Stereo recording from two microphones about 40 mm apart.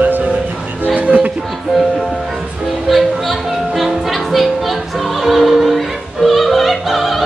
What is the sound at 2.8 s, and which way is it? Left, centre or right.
Music, centre.